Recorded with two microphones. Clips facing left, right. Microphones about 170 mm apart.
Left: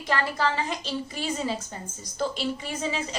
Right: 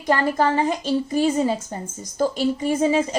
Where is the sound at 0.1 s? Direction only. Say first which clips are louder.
Right 7 dB; 45° right (ahead or behind).